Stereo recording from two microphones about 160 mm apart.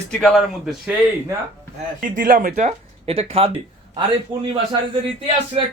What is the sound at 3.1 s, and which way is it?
Speech, 35° right (ahead or behind).